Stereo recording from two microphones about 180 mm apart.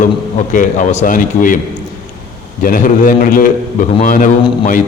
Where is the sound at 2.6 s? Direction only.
50° left (ahead or behind).